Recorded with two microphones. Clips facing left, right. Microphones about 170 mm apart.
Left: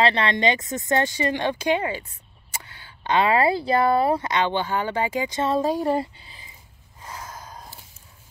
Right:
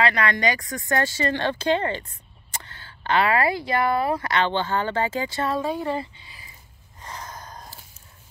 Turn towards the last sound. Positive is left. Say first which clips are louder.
# even
turn(degrees=5)  # may be behind; listen again after turning